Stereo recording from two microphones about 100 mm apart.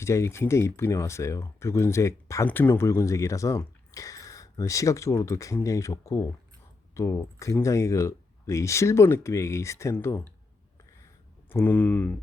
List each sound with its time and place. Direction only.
0.0 s speech: 30° left (ahead or behind)
11.4 s speech: 20° left (ahead or behind)